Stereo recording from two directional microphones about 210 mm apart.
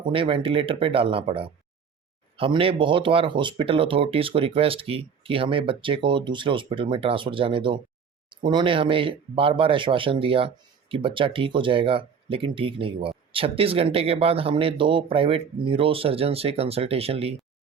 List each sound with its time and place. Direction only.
0.1 s speech: 25° right (ahead or behind)